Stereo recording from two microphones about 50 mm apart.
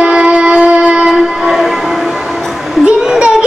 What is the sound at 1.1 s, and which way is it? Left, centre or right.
Train, centre.